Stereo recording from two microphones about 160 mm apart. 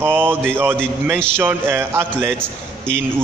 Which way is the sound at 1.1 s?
5° left (ahead or behind).